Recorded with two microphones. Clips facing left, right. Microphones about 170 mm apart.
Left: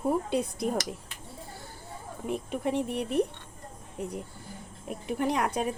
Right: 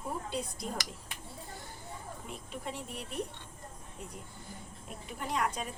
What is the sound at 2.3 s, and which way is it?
Speech, 60° left (ahead or behind).